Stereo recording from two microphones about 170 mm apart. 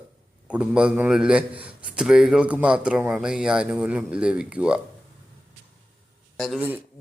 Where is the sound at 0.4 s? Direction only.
5° right (ahead or behind).